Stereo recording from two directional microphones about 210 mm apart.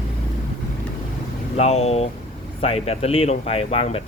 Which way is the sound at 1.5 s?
30° left (ahead or behind).